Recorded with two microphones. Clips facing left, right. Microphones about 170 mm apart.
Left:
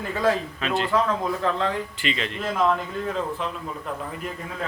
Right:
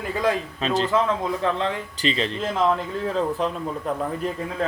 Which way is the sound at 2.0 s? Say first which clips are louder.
Right 4 dB; 30° right (ahead or behind).